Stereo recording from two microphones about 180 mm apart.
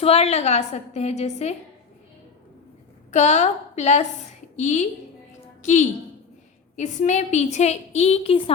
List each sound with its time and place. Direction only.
0.0 s a woman's voice: 35° left (ahead or behind)
3.1 s a woman's voice: 40° left (ahead or behind)
6.7 s a woman's voice: 40° left (ahead or behind)